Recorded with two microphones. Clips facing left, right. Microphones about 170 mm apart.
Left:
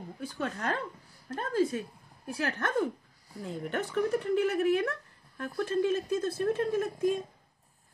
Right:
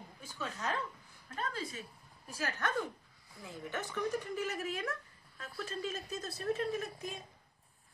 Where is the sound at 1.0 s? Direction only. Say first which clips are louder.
Left 4 dB; 45° left (ahead or behind).